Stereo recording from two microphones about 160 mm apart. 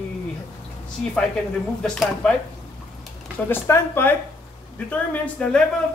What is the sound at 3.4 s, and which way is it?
A woman's voice, 15° left (ahead or behind).